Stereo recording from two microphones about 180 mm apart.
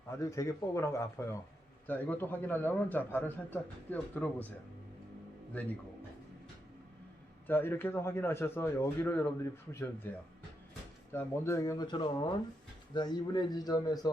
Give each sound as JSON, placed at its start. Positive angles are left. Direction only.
{"t": 0.2, "sound": "a man's voice", "side_deg": 15}
{"t": 7.4, "sound": "a man's voice", "side_deg": 10}
{"t": 11.1, "sound": "speech", "side_deg": 15}